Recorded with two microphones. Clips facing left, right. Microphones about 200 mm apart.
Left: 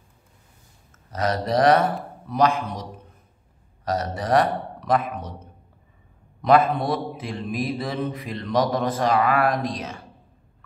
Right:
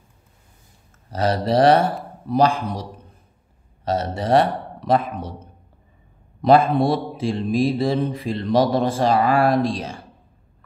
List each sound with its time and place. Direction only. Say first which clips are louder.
1.1 s a sound: right 4 dB; 30° right (ahead or behind)
3.8 s a man's voice: right 3 dB; 25° right (ahead or behind)
6.4 s speech: right 3 dB; 30° right (ahead or behind)